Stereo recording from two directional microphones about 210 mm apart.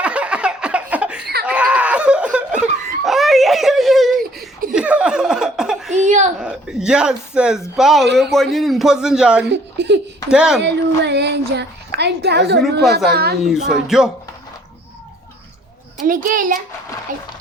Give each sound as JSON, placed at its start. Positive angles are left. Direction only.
{"t": 0.0, "sound": "a sound", "side_deg": -5}
{"t": 1.2, "sound": "laughter", "side_deg": -50}
{"t": 1.5, "sound": "a sound", "side_deg": -5}
{"t": 4.2, "sound": "a sound", "side_deg": -45}
{"t": 4.7, "sound": "laughter", "side_deg": -5}
{"t": 6.1, "sound": "a sound", "side_deg": -35}
{"t": 6.4, "sound": "a man's voice", "side_deg": -5}
{"t": 9.5, "sound": "speech", "side_deg": -55}
{"t": 10.2, "sound": "a man's voice", "side_deg": -5}
{"t": 10.6, "sound": "a woman's voice", "side_deg": -55}
{"t": 13.4, "sound": "a man's voice", "side_deg": 0}
{"t": 16.0, "sound": "a child's voice", "side_deg": -40}